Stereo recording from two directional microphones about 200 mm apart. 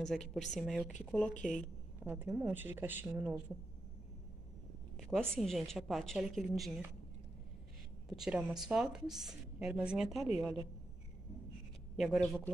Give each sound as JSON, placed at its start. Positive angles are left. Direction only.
{"t": 0.0, "sound": "a woman's voice", "side_deg": 0}
{"t": 1.4, "sound": "a woman's voice", "side_deg": 40}
{"t": 2.0, "sound": "speech", "side_deg": -10}
{"t": 4.9, "sound": "a woman's voice", "side_deg": 0}
{"t": 8.1, "sound": "a woman's voice", "side_deg": -5}
{"t": 12.0, "sound": "a woman's voice", "side_deg": 0}